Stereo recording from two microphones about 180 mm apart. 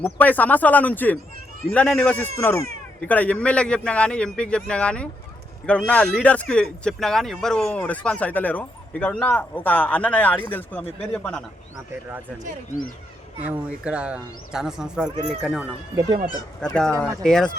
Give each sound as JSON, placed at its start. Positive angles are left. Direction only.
{"t": 0.0, "sound": "a man's voice", "side_deg": 10}
{"t": 13.5, "sound": "a man's voice", "side_deg": -5}
{"t": 16.0, "sound": "speech", "side_deg": -25}
{"t": 16.6, "sound": "a man's voice", "side_deg": 5}